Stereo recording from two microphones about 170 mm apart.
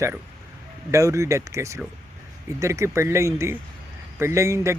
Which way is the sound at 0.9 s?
20° right (ahead or behind).